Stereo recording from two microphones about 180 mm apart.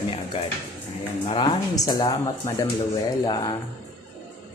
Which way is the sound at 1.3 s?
25° left (ahead or behind).